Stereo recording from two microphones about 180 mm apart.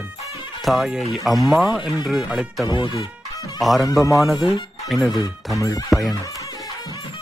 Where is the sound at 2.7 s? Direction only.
25° left (ahead or behind).